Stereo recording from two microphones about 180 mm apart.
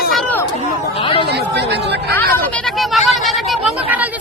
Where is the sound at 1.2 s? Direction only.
65° right (ahead or behind).